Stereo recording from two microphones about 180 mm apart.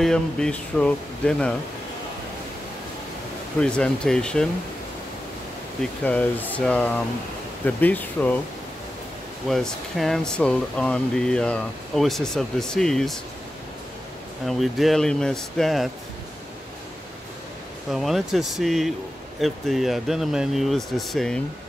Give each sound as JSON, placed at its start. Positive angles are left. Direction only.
{"t": 0.0, "sound": "speech", "side_deg": 5}
{"t": 3.6, "sound": "speech", "side_deg": 5}
{"t": 5.8, "sound": "speech", "side_deg": 10}
{"t": 9.5, "sound": "speech", "side_deg": 0}
{"t": 14.4, "sound": "speech", "side_deg": 0}
{"t": 17.9, "sound": "speech", "side_deg": 0}